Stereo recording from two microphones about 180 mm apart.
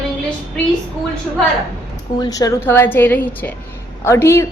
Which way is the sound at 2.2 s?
20° left (ahead or behind).